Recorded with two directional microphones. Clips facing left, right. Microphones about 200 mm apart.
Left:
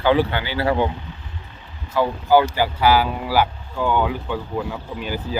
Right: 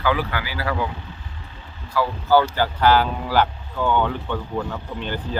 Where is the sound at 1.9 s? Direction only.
20° left (ahead or behind).